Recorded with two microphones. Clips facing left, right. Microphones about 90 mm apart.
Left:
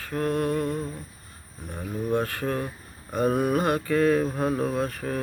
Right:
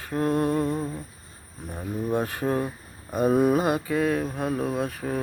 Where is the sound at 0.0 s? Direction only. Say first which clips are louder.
Right 2 dB; 20° right (ahead or behind).